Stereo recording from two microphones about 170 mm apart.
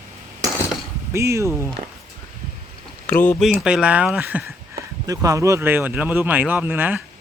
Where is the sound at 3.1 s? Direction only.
10° left (ahead or behind).